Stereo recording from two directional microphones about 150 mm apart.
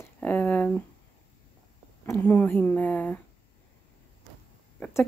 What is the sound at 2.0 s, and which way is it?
A woman's voice, 10° left (ahead or behind).